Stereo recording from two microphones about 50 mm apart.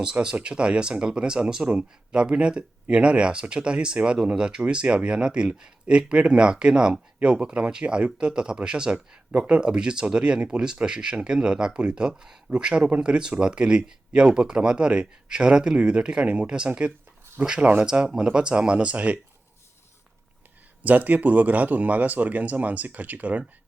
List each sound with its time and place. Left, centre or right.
0.0 s speech: centre
20.8 s speech: right